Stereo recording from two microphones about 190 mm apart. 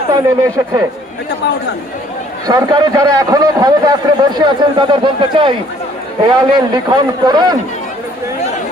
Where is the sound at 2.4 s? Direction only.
20° right (ahead or behind).